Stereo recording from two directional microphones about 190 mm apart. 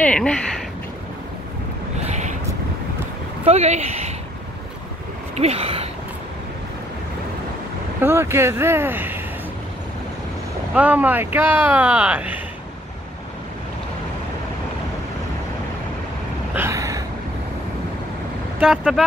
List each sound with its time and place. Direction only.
0.0 s speech: 5° left (ahead or behind)
2.0 s a sound: 40° right (ahead or behind)
3.4 s speech: 35° right (ahead or behind)
5.3 s speech: 35° right (ahead or behind)
8.0 s speech: 15° right (ahead or behind)
10.7 s speech: 10° right (ahead or behind)
16.5 s vehicle: 15° right (ahead or behind)
18.6 s speech: centre (ahead or behind)